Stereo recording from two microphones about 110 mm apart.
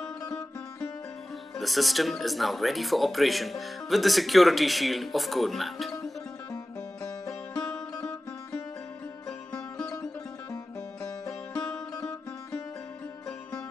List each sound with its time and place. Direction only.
1.6 s speech: centre (ahead or behind)
7.2 s music: 35° left (ahead or behind)
11.1 s music: 35° left (ahead or behind)